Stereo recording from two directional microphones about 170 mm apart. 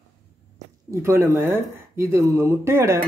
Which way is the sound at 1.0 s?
15° right (ahead or behind).